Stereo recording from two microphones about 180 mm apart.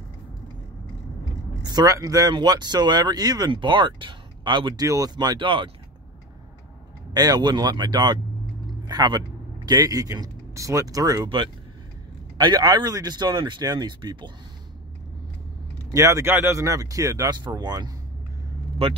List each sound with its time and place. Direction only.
1.6 s speech: 20° right (ahead or behind)
7.2 s speech: 20° right (ahead or behind)
15.9 s speech: 15° right (ahead or behind)